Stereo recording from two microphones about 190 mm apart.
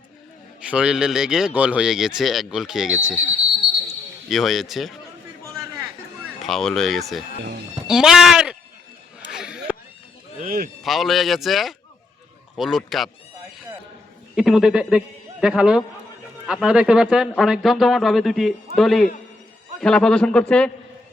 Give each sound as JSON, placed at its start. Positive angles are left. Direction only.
{"t": 0.6, "sound": "speech", "side_deg": -5}
{"t": 4.3, "sound": "speech", "side_deg": 0}
{"t": 6.4, "sound": "speech", "side_deg": 0}
{"t": 9.3, "sound": "a sound", "side_deg": -5}
{"t": 10.3, "sound": "speech", "side_deg": -45}
{"t": 10.8, "sound": "speech", "side_deg": 0}
{"t": 14.3, "sound": "a man's voice", "side_deg": 0}